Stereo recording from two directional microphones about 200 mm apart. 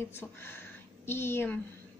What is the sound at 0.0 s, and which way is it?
A woman's voice, 10° left (ahead or behind).